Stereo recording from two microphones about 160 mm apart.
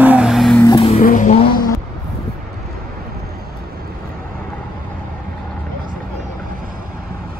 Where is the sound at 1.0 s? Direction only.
55° left (ahead or behind).